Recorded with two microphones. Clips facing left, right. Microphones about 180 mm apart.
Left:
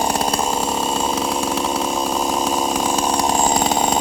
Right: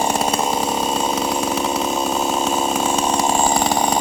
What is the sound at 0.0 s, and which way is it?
Chainsaw, centre (ahead or behind).